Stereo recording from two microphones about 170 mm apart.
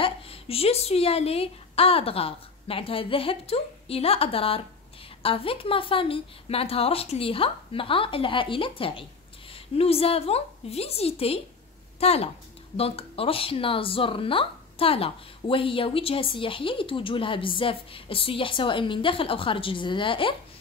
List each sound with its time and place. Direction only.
0.0 s a woman's voice: 35° left (ahead or behind)